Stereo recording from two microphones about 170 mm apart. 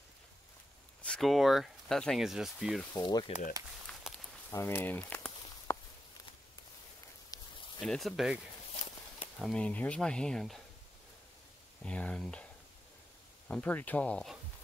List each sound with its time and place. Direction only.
1.0 s speech: 5° left (ahead or behind)
2.9 s speech: 25° left (ahead or behind)
3.8 s walk: centre (ahead or behind)
4.5 s a sound: 15° left (ahead or behind)
7.3 s a sound: 20° left (ahead or behind)
7.8 s speech: centre (ahead or behind)
9.4 s speech: 5° left (ahead or behind)
11.8 s speech: 5° left (ahead or behind)
13.5 s speech: 10° left (ahead or behind)